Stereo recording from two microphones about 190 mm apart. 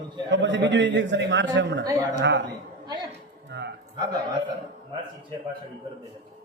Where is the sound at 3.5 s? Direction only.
65° right (ahead or behind).